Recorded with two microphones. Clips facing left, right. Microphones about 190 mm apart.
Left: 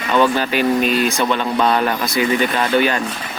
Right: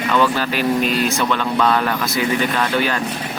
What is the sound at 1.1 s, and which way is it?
Speech, 20° left (ahead or behind).